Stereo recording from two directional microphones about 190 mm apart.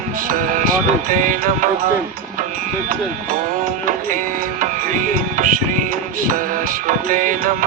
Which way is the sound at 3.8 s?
45° right (ahead or behind).